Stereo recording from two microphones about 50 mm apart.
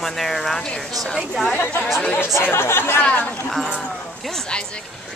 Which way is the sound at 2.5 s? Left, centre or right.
Left.